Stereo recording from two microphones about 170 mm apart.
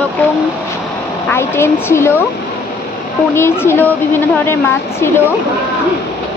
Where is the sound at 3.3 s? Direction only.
15° left (ahead or behind).